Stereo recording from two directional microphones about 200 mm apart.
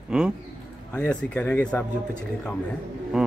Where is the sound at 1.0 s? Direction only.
5° left (ahead or behind).